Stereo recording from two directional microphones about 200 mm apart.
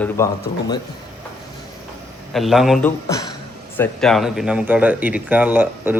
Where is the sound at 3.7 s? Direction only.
5° left (ahead or behind).